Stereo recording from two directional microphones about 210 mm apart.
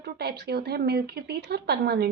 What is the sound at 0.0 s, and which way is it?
Speech, 50° right (ahead or behind).